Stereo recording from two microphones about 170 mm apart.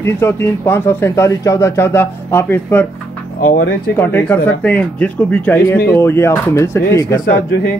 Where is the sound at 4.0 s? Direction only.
10° left (ahead or behind).